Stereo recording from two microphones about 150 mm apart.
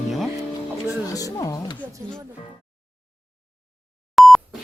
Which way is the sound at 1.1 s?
25° left (ahead or behind).